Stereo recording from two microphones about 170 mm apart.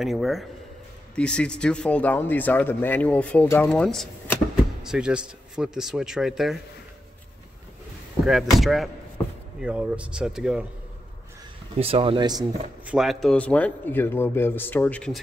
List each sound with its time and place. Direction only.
0.0 s speech: centre (ahead or behind)
8.3 s speech: centre (ahead or behind)
11.8 s speech: 35° right (ahead or behind)
12.8 s speech: 5° right (ahead or behind)